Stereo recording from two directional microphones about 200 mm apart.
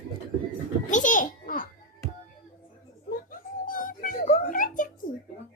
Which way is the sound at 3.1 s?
45° left (ahead or behind).